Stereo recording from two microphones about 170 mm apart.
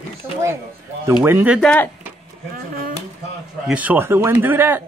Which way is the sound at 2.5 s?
60° right (ahead or behind).